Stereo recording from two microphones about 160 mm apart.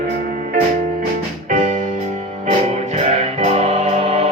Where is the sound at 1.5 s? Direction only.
50° right (ahead or behind).